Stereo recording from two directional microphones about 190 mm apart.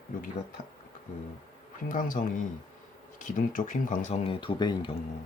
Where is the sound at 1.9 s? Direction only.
45° left (ahead or behind); by 5.0 s 25° left (ahead or behind).